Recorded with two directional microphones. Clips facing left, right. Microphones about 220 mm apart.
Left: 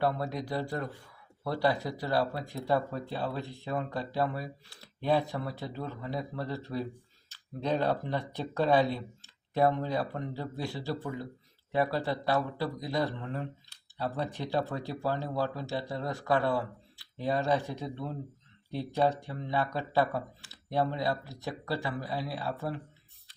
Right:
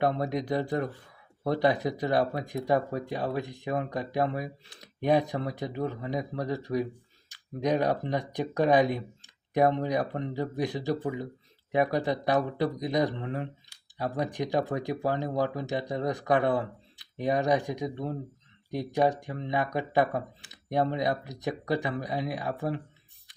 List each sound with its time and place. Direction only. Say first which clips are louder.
0.0 s speech: right 3 dB; 20° right (ahead or behind)